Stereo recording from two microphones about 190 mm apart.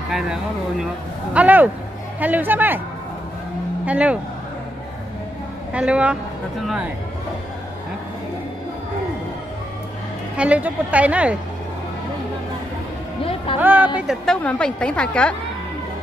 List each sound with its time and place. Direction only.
0.1 s a woman's voice: centre (ahead or behind)
3.8 s a woman's voice: 5° right (ahead or behind)
5.7 s a woman's voice: 5° right (ahead or behind)
10.3 s a woman's voice: 5° right (ahead or behind)
13.2 s music: 30° left (ahead or behind)
13.6 s a woman's voice: 10° right (ahead or behind); by 15.3 s 5° left (ahead or behind)